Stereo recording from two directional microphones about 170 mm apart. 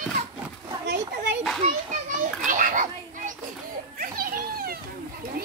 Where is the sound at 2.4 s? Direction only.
50° right (ahead or behind).